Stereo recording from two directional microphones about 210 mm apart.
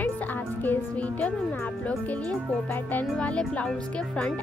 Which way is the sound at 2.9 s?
5° left (ahead or behind).